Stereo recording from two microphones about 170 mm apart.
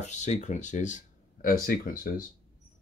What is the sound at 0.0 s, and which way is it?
Speech, 45° left (ahead or behind).